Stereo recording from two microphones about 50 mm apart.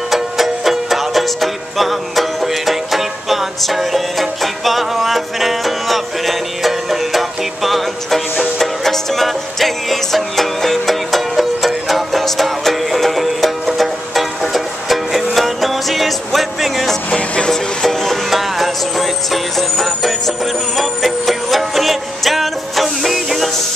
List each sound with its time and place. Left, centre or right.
0.1 s music: centre
17.1 s music: centre
17.8 s music: centre